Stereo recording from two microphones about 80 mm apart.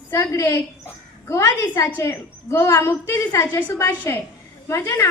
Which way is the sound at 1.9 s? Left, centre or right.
Left.